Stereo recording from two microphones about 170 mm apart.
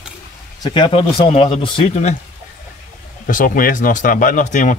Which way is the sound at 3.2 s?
55° left (ahead or behind).